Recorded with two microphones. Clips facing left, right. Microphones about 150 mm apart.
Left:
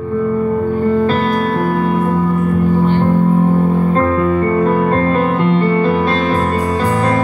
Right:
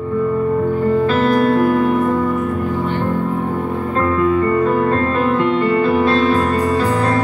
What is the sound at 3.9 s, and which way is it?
Music, 35° left (ahead or behind).